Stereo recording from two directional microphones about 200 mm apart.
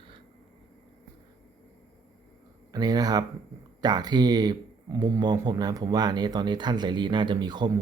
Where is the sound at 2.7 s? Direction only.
20° right (ahead or behind).